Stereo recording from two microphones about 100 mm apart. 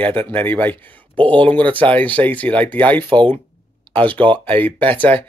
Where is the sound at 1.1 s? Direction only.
55° right (ahead or behind).